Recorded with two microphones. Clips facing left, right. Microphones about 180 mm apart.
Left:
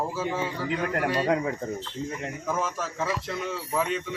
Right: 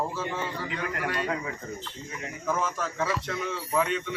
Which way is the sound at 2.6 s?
5° left (ahead or behind).